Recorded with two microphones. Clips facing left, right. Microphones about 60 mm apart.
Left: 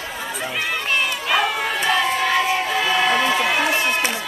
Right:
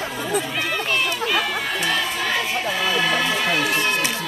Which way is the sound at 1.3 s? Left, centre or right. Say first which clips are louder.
Left 3 dB; centre.